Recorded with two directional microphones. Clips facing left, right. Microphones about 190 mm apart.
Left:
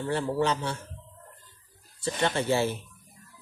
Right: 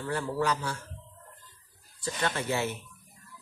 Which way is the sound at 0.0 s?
25° left (ahead or behind).